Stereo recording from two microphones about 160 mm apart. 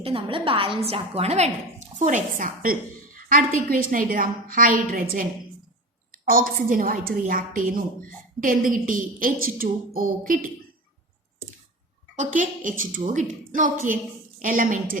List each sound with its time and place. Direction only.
0.0 s a woman's voice: 35° right (ahead or behind)
2.0 s a woman's voice: 50° right (ahead or behind)
12.1 s a woman's voice: 50° right (ahead or behind)